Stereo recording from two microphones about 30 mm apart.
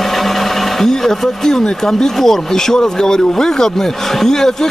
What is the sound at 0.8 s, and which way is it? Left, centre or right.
Speech, centre.